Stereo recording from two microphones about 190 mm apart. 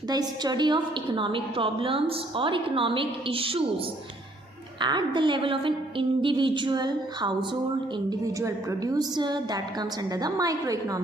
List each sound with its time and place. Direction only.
0.1 s a woman's voice: 20° right (ahead or behind)
4.8 s a woman's voice: 25° right (ahead or behind)